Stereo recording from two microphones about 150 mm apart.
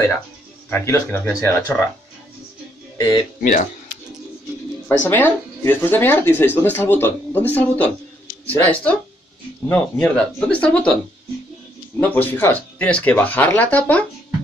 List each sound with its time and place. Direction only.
0.7 s speech: 15° left (ahead or behind)
3.3 s speech: 65° left (ahead or behind)
5.0 s speech: 15° left (ahead or behind)
12.0 s speech: 10° left (ahead or behind)